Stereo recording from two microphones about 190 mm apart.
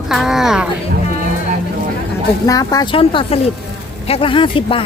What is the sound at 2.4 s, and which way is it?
Speech, 20° left (ahead or behind).